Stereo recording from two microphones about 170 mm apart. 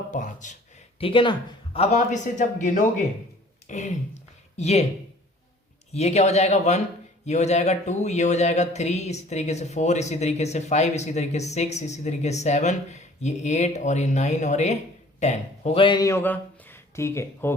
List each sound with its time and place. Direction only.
0.1 s speech: 45° left (ahead or behind)
0.9 s speech: 30° left (ahead or behind)
5.9 s speech: 40° left (ahead or behind); by 17.5 s 15° left (ahead or behind)